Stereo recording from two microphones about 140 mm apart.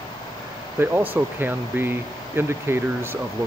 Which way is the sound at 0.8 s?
15° right (ahead or behind).